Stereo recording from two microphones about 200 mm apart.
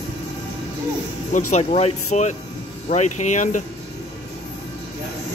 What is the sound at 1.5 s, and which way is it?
Speech, 35° left (ahead or behind).